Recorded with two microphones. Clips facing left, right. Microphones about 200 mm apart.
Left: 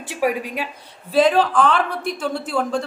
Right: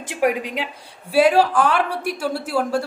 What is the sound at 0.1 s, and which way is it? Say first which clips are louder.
A woman's voice: right 1 dB; 15° right (ahead or behind).